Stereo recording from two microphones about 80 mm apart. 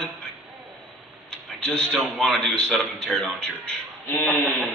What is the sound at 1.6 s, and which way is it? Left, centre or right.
A woman's voice, centre.